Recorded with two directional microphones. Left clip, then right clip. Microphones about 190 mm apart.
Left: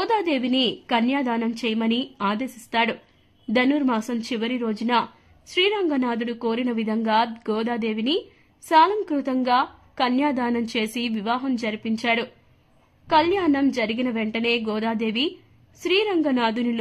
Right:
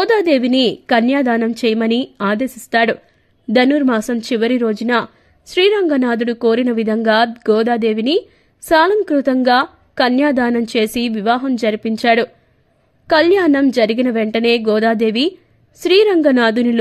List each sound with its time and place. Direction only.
0.0 s a woman's voice: 35° right (ahead or behind)